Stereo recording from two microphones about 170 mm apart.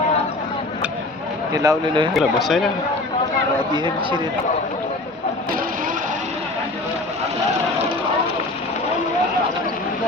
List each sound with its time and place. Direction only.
1.5 s speech: 20° right (ahead or behind)
2.1 s speech: centre (ahead or behind)
3.8 s speech: 30° right (ahead or behind)